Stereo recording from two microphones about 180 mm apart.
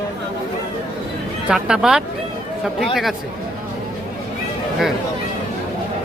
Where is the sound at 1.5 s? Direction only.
5° right (ahead or behind).